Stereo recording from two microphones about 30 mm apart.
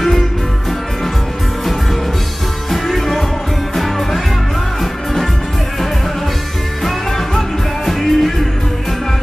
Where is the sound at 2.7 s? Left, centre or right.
Centre.